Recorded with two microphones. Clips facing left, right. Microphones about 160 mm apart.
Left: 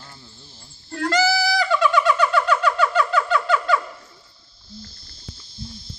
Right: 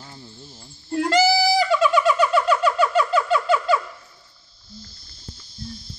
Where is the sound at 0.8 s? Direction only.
20° right (ahead or behind).